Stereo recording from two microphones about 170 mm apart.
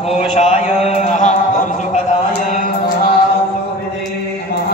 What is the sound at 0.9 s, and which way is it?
Mantra, 45° left (ahead or behind).